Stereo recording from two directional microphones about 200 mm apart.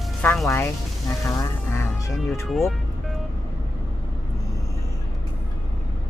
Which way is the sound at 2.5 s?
Centre (ahead or behind).